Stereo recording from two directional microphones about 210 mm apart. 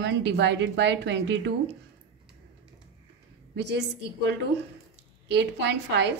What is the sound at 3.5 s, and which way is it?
A woman's voice, 55° right (ahead or behind).